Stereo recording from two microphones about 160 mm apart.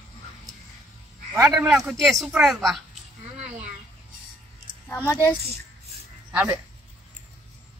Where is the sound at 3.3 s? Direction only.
40° right (ahead or behind).